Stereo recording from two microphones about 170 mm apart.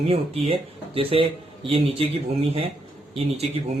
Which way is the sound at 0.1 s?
35° right (ahead or behind).